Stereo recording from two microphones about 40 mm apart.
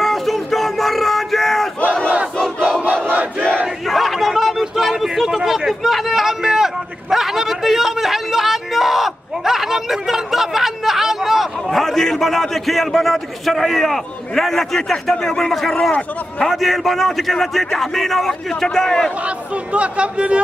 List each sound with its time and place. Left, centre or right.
0.0 s crowd: centre
3.8 s a sound: centre
11.8 s a man's voice: centre
19.2 s speech: right